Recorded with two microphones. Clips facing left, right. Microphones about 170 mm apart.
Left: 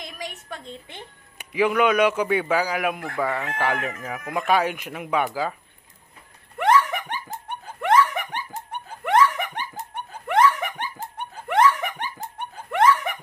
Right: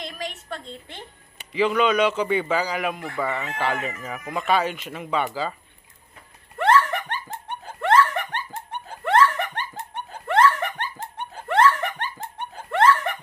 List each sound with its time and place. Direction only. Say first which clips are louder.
0.0 s a woman's voice: right 3 dB; 15° left (ahead or behind)
6.6 s a sound: even; 15° left (ahead or behind)
7.4 s laughter: even; 15° left (ahead or behind)